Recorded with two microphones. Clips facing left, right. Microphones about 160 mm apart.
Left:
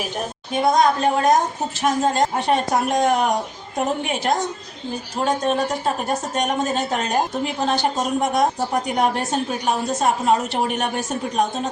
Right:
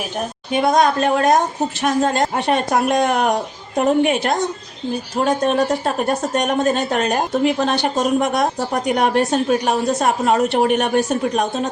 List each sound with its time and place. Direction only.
0.5 s a woman's voice: 70° right (ahead or behind)
5.5 s a woman's voice: 65° right (ahead or behind)